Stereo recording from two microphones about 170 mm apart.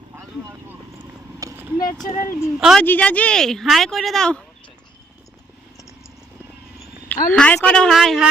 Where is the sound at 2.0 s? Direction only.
50° left (ahead or behind).